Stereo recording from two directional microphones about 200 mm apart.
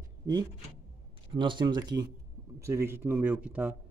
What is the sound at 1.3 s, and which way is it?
Speech, 25° right (ahead or behind).